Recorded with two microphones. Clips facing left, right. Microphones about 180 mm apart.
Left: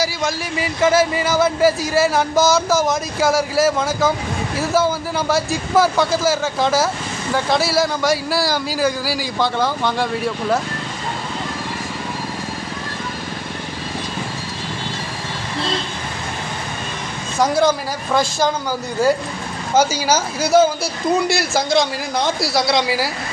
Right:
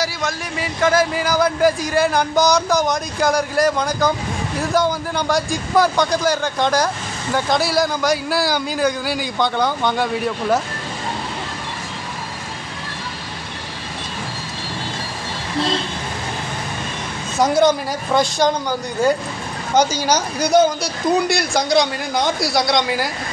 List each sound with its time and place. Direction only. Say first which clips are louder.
0.0 s speech: left 2 dB; centre (ahead or behind)
17.4 s speech: right 1 dB; centre (ahead or behind)